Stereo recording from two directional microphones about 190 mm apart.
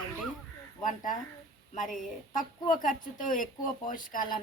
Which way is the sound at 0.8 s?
45° left (ahead or behind).